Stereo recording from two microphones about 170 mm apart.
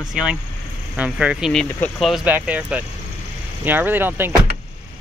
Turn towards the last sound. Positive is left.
turn(degrees=-10)  # may be behind; listen again after turning